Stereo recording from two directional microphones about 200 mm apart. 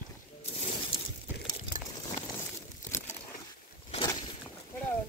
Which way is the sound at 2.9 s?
15° left (ahead or behind).